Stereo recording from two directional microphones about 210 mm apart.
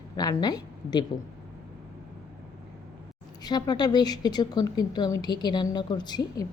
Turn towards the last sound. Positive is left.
turn(degrees=20)  # may be behind; listen again after turning